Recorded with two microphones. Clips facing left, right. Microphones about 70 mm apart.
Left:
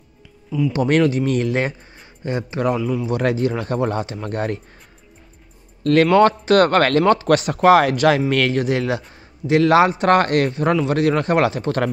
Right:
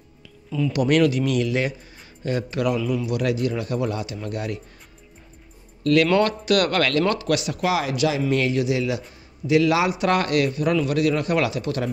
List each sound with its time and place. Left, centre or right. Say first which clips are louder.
0.5 s speech: left 4 dB; centre
0.7 s a man's voice: left 1 dB; left
2.2 s speech: left 2 dB; left
2.8 s speech: left 2 dB; centre
3.1 s a man's voice: left 4 dB; left
6.1 s a man's voice: left 6 dB; left